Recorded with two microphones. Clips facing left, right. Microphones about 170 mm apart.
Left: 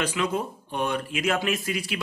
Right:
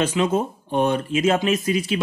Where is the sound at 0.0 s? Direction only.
25° right (ahead or behind).